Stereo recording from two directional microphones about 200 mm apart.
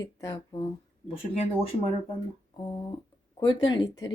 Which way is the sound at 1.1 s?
30° left (ahead or behind).